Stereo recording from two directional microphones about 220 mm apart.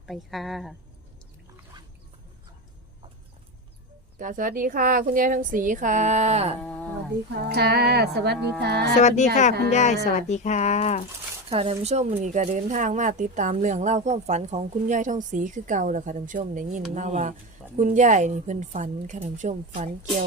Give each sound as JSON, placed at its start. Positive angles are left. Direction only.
{"t": 0.0, "sound": "speech", "side_deg": 0}
{"t": 4.2, "sound": "speech", "side_deg": -35}
{"t": 6.6, "sound": "a sound", "side_deg": 5}
{"t": 7.4, "sound": "speech", "side_deg": -45}
{"t": 9.0, "sound": "speech", "side_deg": 30}
{"t": 11.4, "sound": "speech", "side_deg": -25}